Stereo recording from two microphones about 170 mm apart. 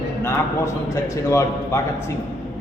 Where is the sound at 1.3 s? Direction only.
15° left (ahead or behind).